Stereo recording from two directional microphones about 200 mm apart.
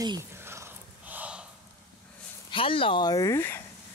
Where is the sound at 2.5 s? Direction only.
25° left (ahead or behind).